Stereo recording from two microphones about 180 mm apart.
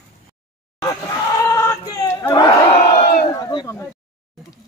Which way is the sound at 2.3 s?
20° left (ahead or behind).